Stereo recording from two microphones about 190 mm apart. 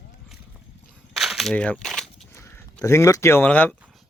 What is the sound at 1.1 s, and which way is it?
Crushing, centre (ahead or behind).